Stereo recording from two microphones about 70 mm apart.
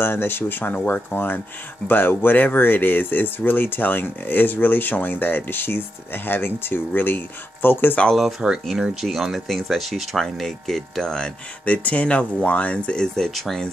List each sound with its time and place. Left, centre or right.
0.0 s speech: left
8.2 s speech: centre